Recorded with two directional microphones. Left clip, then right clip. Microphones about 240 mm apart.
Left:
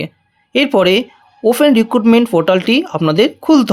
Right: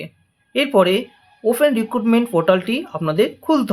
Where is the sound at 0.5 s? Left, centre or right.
Left.